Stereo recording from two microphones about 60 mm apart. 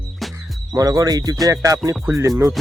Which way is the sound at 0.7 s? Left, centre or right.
Right.